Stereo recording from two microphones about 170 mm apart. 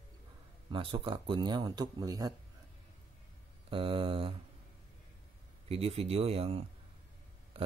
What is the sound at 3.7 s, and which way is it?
Speech, 30° right (ahead or behind).